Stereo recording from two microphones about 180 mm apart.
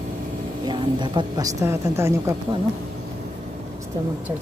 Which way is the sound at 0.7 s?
25° right (ahead or behind).